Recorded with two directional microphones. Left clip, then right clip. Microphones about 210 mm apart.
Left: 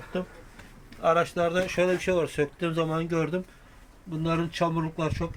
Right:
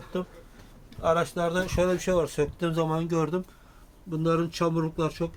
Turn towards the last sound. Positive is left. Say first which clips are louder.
# right 1 dB
turn(degrees=0)  # may be behind; listen again after turning